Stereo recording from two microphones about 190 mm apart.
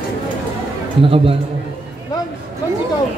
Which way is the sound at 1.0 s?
30° right (ahead or behind).